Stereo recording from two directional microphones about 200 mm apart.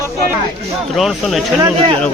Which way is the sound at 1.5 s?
15° right (ahead or behind).